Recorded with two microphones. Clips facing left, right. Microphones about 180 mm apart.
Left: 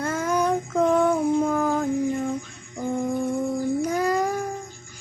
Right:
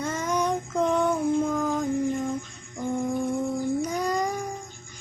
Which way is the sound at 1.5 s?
55° left (ahead or behind).